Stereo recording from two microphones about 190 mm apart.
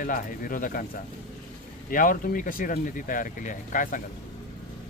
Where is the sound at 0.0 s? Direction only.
45° left (ahead or behind).